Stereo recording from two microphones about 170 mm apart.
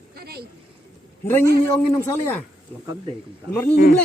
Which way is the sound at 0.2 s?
65° right (ahead or behind).